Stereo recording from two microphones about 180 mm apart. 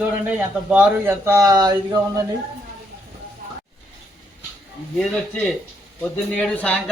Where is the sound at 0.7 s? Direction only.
15° right (ahead or behind).